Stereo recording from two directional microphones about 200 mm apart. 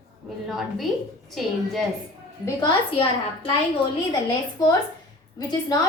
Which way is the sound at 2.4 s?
25° left (ahead or behind).